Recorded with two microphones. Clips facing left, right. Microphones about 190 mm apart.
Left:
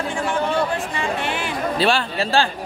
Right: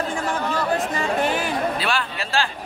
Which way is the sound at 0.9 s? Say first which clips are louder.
Right 2 dB; 40° right (ahead or behind).